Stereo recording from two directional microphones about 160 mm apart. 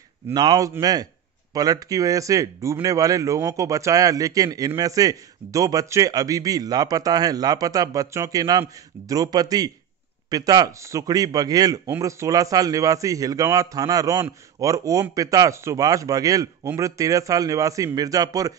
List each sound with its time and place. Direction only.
0.3 s speech: 25° right (ahead or behind)